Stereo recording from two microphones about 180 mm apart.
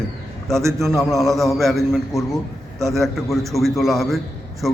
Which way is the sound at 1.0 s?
Centre (ahead or behind).